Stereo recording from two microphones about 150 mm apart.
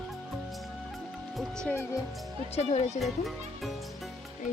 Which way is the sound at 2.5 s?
45° left (ahead or behind).